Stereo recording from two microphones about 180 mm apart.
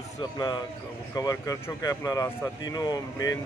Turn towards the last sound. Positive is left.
turn(degrees=20)  # may be behind; listen again after turning